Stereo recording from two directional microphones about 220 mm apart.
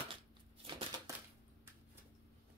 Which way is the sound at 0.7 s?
25° right (ahead or behind).